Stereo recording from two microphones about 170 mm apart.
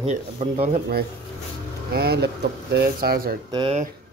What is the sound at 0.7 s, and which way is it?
Speech, 65° right (ahead or behind).